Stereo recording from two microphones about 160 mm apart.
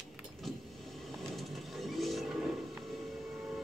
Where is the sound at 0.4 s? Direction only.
Centre (ahead or behind).